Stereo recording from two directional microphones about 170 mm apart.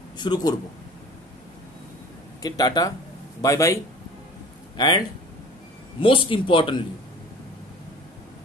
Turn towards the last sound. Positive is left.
turn(degrees=30)  # may be behind; listen again after turning